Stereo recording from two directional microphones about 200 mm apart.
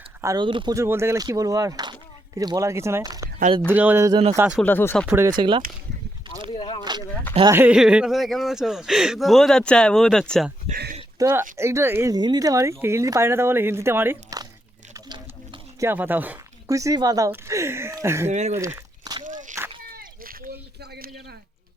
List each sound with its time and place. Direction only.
0.2 s speech: 20° right (ahead or behind)
4.6 s speech: 10° left (ahead or behind)
5.0 s speech: 10° right (ahead or behind)
5.4 s speech: 25° right (ahead or behind)
6.5 s a sound: 25° left (ahead or behind)
7.5 s speech: 5° right (ahead or behind)
10.7 s a sound: 50° right (ahead or behind)
11.2 s speech: 10° right (ahead or behind)
14.9 s a sound: 20° right (ahead or behind)
15.9 s speech: 10° right (ahead or behind)
18.3 s speech: 35° right (ahead or behind)
19.2 s walk: 40° right (ahead or behind)
19.9 s a sound: 45° right (ahead or behind)